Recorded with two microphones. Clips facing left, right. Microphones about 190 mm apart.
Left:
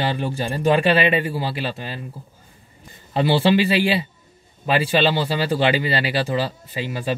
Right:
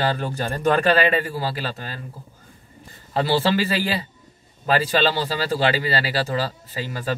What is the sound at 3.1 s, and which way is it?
Speech, 20° left (ahead or behind).